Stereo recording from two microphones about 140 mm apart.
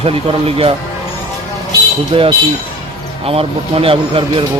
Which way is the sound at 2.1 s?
35° right (ahead or behind).